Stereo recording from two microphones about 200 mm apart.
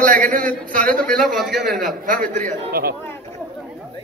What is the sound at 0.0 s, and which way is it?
Speech, 40° right (ahead or behind).